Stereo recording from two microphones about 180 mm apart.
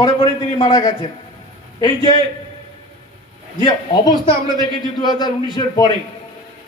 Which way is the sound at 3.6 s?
25° left (ahead or behind).